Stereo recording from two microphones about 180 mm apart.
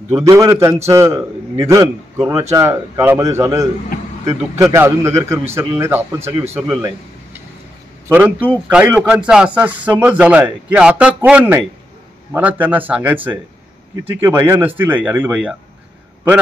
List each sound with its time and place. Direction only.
0.1 s a man's voice: 20° right (ahead or behind)
8.1 s speech: 10° right (ahead or behind)